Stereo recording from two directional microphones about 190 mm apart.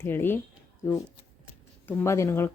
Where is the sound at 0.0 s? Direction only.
10° left (ahead or behind).